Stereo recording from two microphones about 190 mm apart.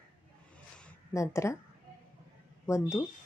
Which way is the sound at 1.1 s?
15° left (ahead or behind).